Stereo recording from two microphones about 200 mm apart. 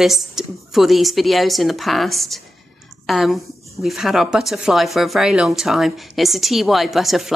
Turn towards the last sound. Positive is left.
turn(degrees=0)  # may be behind; listen again after turning